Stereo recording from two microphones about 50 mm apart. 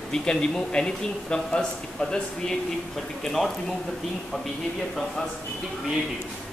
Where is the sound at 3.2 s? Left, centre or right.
Centre.